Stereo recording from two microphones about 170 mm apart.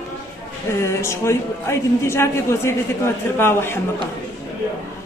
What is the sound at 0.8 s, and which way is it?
A man's voice, 15° left (ahead or behind).